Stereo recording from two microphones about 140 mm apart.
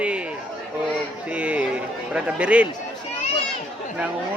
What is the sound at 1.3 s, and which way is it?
Speech, 10° right (ahead or behind).